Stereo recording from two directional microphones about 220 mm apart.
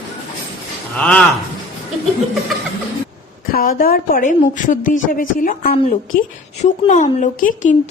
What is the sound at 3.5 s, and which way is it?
A woman's voice, 40° left (ahead or behind).